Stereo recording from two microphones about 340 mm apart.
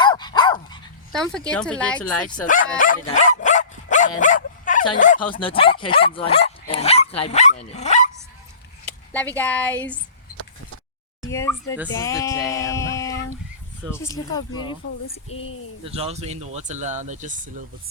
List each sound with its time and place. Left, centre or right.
0.0 s dog: centre
1.1 s speech: centre
2.7 s dog: left
4.2 s speech: left
6.7 s dog: centre
7.2 s speech: centre
9.3 s speech: centre
11.3 s speech: centre
11.9 s a sound: centre
14.0 s speech: centre
15.8 s speech: centre